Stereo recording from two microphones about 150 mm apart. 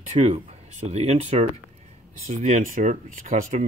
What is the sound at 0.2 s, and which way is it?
Speech, 45° right (ahead or behind).